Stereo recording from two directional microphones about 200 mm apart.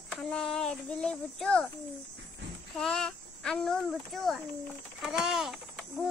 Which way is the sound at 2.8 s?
5° left (ahead or behind).